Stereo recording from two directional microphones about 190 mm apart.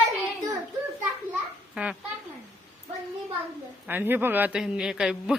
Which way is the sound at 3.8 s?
10° right (ahead or behind).